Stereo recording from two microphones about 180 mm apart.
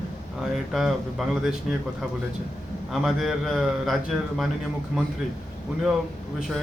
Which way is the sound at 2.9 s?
Centre (ahead or behind).